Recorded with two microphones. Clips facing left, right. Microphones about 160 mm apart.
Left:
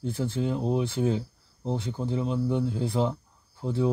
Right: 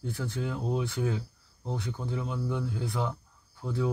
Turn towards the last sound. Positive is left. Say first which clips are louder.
# left 4 dB
turn(degrees=25)  # may be behind; listen again after turning